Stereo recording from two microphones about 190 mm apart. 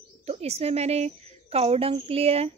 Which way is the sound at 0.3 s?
35° right (ahead or behind).